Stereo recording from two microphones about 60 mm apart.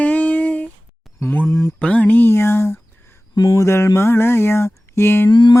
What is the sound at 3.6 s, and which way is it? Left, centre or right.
Music, left.